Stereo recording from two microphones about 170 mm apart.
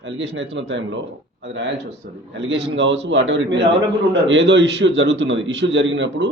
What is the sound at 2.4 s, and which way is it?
A man's voice, 90° right.